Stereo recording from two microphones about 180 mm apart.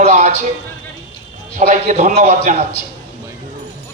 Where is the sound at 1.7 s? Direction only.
45° right (ahead or behind).